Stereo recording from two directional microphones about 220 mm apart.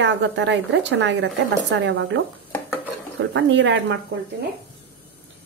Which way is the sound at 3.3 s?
55° right (ahead or behind).